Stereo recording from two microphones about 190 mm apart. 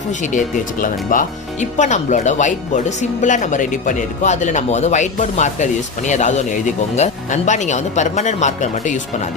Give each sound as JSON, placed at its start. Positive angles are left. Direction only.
{"t": 0.2, "sound": "speech", "side_deg": 45}